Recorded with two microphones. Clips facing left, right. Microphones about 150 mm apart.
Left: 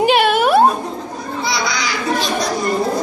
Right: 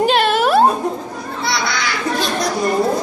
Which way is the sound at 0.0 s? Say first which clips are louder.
Left 1 dB; 5° left (ahead or behind).